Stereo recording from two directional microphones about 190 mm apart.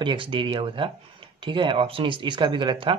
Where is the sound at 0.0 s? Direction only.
25° right (ahead or behind).